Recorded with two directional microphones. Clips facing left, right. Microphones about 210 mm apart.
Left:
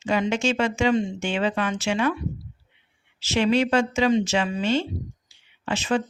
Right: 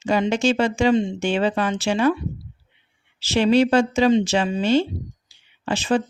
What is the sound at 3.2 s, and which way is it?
A woman's voice, 35° right (ahead or behind).